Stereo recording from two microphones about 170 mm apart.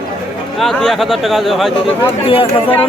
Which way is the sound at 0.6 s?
5° left (ahead or behind).